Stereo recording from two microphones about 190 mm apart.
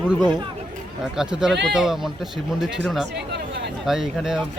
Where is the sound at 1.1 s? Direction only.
5° right (ahead or behind).